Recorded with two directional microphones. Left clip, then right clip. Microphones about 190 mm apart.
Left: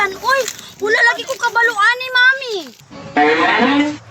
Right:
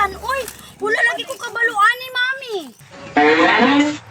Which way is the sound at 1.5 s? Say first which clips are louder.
Left 5 dB; 30° left (ahead or behind).